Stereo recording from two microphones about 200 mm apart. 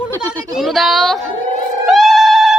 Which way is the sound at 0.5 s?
Centre (ahead or behind).